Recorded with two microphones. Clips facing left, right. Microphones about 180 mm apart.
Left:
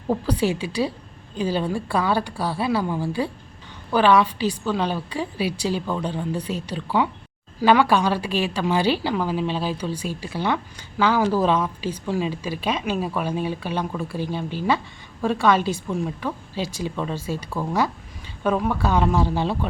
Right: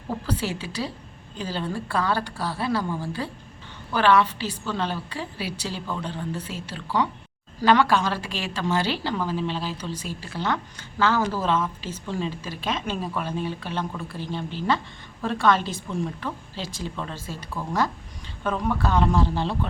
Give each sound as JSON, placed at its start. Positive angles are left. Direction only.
{"t": 0.3, "sound": "a woman's voice", "side_deg": 15}